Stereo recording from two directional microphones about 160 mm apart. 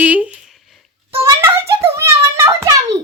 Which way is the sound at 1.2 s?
15° right (ahead or behind).